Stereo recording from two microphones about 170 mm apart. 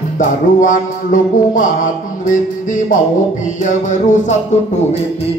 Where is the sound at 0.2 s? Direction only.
50° left (ahead or behind).